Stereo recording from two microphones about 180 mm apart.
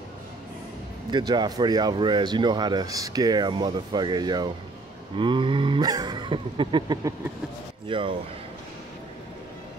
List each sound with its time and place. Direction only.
1.1 s speech: 25° right (ahead or behind)